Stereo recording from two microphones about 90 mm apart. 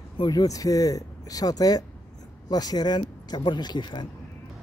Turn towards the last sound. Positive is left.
turn(degrees=60)  # may be behind; listen again after turning